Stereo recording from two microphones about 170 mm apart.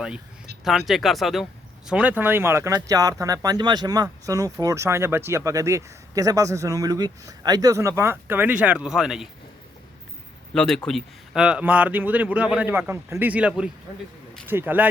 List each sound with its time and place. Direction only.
0.6 s speech: centre (ahead or behind)
10.5 s speech: centre (ahead or behind)